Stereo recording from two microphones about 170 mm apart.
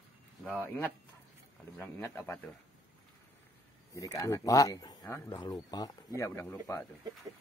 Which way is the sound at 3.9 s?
20° left (ahead or behind).